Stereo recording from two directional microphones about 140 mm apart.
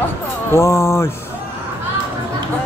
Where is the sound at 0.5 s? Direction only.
20° left (ahead or behind).